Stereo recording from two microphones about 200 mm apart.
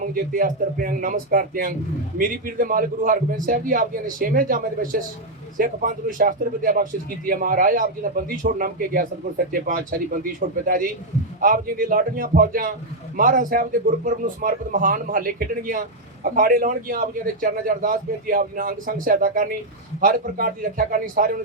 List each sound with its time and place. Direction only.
0.0 s speech: 45° right (ahead or behind)